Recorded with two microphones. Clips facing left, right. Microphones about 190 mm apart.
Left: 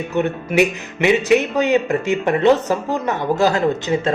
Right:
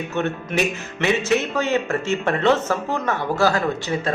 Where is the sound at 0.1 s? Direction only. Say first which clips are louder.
Left 6 dB; 15° left (ahead or behind).